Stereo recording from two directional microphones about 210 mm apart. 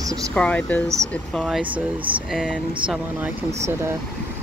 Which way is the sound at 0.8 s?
15° right (ahead or behind).